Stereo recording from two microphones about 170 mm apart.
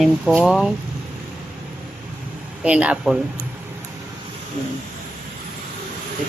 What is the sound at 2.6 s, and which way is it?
Speech, 5° right (ahead or behind).